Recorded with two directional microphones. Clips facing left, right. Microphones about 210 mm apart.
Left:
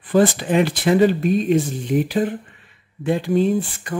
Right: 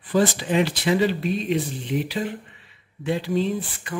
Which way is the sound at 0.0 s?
55° left (ahead or behind).